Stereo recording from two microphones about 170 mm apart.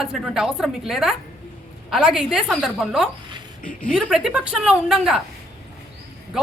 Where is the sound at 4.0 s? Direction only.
Centre (ahead or behind).